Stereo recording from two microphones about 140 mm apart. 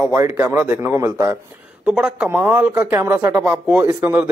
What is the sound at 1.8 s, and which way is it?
Speech, 5° right (ahead or behind).